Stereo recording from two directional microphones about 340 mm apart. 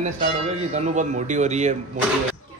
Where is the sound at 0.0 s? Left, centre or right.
Centre.